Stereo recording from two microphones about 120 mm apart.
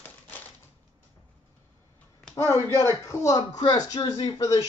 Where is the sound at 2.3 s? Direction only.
20° left (ahead or behind).